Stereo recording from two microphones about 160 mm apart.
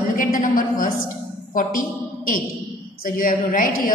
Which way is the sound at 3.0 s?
60° left (ahead or behind).